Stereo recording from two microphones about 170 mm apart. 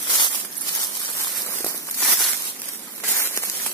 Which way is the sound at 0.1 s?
25° left (ahead or behind).